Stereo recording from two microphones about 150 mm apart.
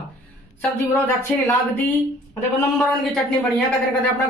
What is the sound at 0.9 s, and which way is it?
A man's voice, 15° left (ahead or behind).